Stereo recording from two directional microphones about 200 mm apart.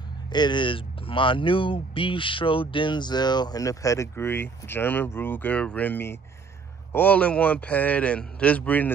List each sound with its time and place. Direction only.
0.3 s speech: 20° left (ahead or behind)